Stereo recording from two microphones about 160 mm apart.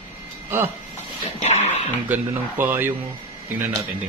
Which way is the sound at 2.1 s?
10° right (ahead or behind).